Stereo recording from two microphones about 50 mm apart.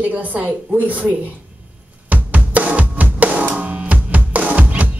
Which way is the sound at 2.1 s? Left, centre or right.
Right.